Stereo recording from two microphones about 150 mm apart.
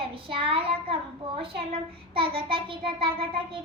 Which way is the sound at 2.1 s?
35° right (ahead or behind).